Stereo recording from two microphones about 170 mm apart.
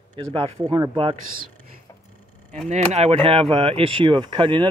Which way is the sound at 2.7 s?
40° right (ahead or behind).